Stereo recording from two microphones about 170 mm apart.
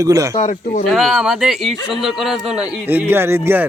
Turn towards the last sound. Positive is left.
turn(degrees=-15)  # may be behind; listen again after turning